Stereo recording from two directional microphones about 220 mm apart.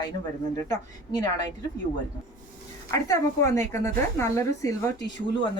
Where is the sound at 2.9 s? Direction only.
15° left (ahead or behind).